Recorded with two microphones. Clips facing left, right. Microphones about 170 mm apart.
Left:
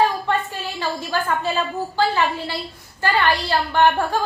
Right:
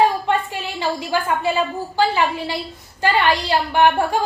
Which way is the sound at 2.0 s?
15° right (ahead or behind).